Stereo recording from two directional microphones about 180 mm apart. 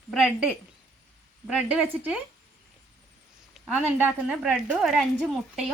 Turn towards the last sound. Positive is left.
turn(degrees=0)  # may be behind; listen again after turning